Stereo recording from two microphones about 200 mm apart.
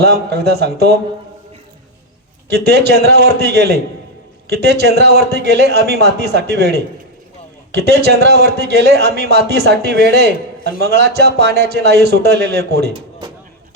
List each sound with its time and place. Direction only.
0.0 s speech: 55° right (ahead or behind)
2.5 s speech: 55° right (ahead or behind)
12.9 s a sound: 25° right (ahead or behind)